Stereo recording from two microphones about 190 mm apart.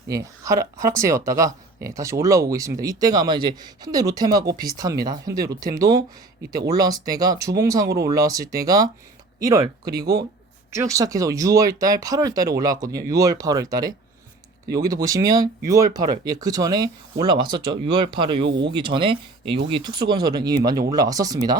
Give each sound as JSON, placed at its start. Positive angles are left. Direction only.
{"t": 0.1, "sound": "speech", "side_deg": -15}
{"t": 15.0, "sound": "speech", "side_deg": -20}
{"t": 18.4, "sound": "speech", "side_deg": -70}
{"t": 18.7, "sound": "speech", "side_deg": -25}